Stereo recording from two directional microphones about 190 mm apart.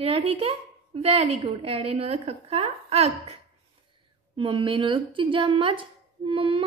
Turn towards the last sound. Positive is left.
turn(degrees=-30)  # may be behind; listen again after turning